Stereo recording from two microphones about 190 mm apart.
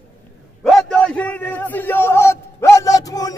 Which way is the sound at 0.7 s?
5° left (ahead or behind).